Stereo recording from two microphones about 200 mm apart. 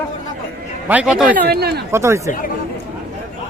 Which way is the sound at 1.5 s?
50° right (ahead or behind).